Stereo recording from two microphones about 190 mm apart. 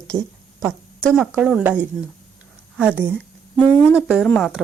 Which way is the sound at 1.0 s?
5° left (ahead or behind).